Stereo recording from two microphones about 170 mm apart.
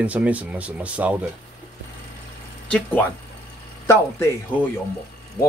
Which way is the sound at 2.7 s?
10° left (ahead or behind).